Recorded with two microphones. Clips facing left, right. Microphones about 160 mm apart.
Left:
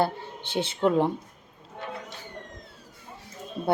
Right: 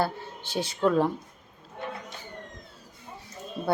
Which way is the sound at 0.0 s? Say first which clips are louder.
Left 2 dB; 20° left (ahead or behind).